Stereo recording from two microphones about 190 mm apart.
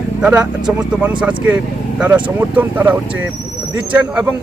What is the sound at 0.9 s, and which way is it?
A man's voice, 5° right (ahead or behind).